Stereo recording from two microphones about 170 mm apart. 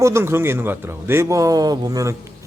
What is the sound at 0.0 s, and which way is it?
A man's voice, 15° right (ahead or behind).